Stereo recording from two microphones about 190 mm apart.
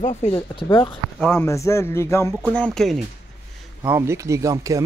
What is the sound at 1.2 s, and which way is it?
Speech, 10° left (ahead or behind).